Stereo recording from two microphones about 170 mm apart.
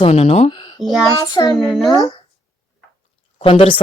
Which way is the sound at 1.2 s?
25° left (ahead or behind).